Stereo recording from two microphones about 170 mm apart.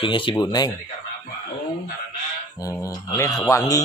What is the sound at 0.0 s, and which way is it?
Speech, 30° left (ahead or behind).